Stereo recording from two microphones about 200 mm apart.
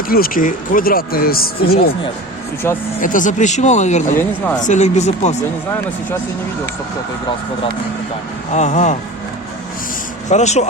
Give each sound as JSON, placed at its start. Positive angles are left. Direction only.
{"t": 0.1, "sound": "speech", "side_deg": 45}
{"t": 2.6, "sound": "speech", "side_deg": 10}
{"t": 3.0, "sound": "speech", "side_deg": 40}
{"t": 8.5, "sound": "speech", "side_deg": 35}
{"t": 10.2, "sound": "speech", "side_deg": 35}